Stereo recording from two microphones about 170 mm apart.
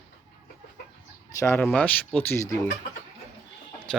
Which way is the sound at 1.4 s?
15° left (ahead or behind).